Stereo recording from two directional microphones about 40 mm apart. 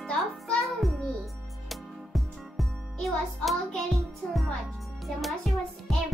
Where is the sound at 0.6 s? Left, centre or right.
Centre.